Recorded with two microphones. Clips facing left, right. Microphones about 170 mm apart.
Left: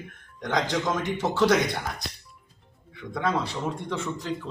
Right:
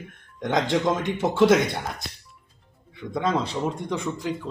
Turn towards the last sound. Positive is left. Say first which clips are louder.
# right 3 dB
turn(degrees=-15)  # may be behind; listen again after turning